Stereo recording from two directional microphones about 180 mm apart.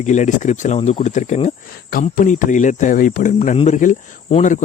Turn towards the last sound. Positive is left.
turn(degrees=45)  # may be behind; listen again after turning